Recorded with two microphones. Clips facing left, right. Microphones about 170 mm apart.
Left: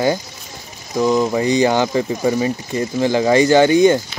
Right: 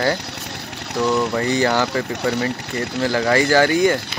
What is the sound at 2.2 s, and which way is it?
Speech, 70° right (ahead or behind).